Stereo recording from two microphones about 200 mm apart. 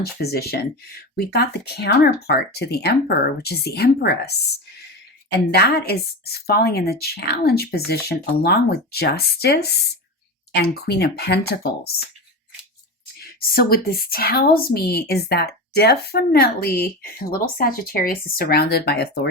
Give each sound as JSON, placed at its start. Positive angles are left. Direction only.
{"t": 0.0, "sound": "a woman's voice", "side_deg": 50}
{"t": 5.5, "sound": "a woman's voice", "side_deg": 50}
{"t": 13.1, "sound": "a woman's voice", "side_deg": 50}